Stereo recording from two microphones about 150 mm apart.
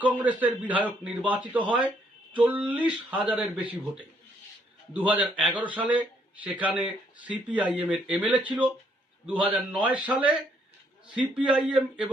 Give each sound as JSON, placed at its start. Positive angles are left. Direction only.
{"t": 0.0, "sound": "a man's voice", "side_deg": -10}
{"t": 9.7, "sound": "speech", "side_deg": -30}
{"t": 11.3, "sound": "a man's voice", "side_deg": -5}